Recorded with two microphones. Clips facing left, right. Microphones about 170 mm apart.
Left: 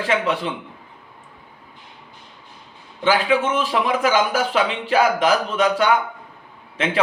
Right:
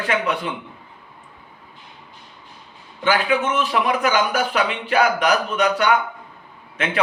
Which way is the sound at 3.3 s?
30° left (ahead or behind).